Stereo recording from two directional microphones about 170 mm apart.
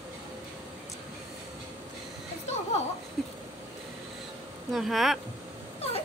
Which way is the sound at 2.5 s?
40° left (ahead or behind).